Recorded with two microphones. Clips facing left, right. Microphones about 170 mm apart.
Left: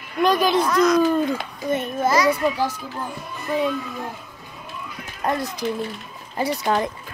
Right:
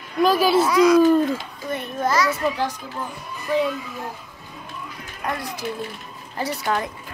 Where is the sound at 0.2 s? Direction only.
5° right (ahead or behind).